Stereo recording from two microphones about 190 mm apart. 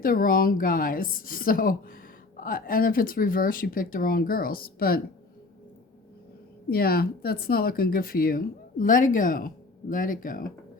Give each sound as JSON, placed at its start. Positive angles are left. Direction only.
{"t": 0.0, "sound": "a woman's voice", "side_deg": 50}
{"t": 6.7, "sound": "a woman's voice", "side_deg": 55}